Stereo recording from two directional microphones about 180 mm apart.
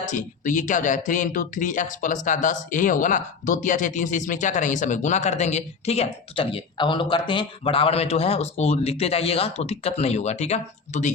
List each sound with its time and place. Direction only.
0.0 s speech: 45° left (ahead or behind)